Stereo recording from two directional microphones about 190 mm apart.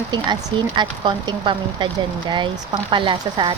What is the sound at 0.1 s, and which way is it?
Speech, 20° right (ahead or behind).